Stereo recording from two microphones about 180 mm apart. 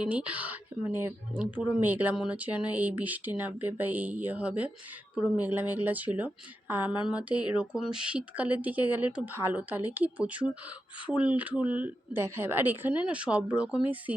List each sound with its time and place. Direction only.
0.0 s speech: 5° right (ahead or behind)